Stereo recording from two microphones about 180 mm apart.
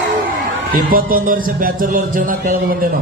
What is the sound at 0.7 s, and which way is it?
A man's voice, 50° right (ahead or behind).